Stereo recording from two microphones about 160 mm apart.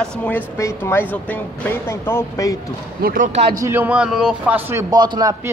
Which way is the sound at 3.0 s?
65° right (ahead or behind).